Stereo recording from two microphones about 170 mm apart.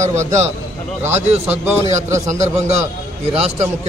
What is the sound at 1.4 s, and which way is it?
Speech, 10° right (ahead or behind).